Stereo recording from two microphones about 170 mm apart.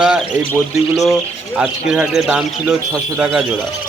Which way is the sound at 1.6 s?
5° right (ahead or behind).